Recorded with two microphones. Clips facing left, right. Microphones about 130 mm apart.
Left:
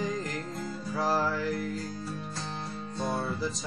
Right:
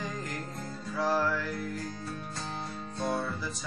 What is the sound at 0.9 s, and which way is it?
Music, 30° left (ahead or behind).